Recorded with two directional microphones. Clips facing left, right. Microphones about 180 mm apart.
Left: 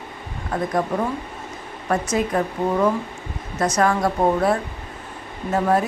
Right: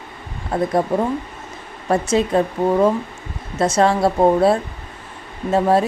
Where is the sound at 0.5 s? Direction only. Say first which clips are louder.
Right 4 dB; 30° right (ahead or behind).